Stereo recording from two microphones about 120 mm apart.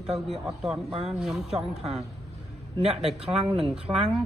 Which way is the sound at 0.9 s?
55° right (ahead or behind).